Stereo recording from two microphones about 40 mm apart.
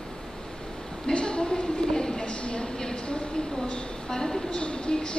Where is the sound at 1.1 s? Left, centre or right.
Left.